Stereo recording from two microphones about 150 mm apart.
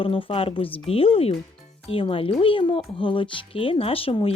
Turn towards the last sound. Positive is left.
turn(degrees=40)  # may be behind; listen again after turning